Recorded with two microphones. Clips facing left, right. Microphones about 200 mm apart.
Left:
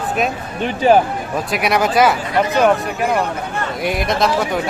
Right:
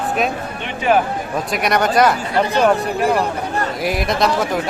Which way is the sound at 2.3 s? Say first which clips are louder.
Left 1 dB; 30° right (ahead or behind).